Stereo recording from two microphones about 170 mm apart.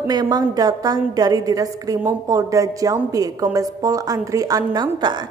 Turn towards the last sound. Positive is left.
turn(degrees=-25)  # may be behind; listen again after turning